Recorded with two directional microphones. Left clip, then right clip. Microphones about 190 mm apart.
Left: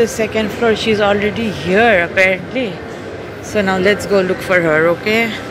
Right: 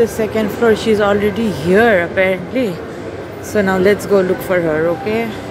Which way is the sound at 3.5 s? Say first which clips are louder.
Right 1 dB; 20° right (ahead or behind).